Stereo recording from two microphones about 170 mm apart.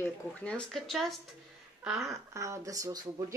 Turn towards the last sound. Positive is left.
turn(degrees=-20)  # may be behind; listen again after turning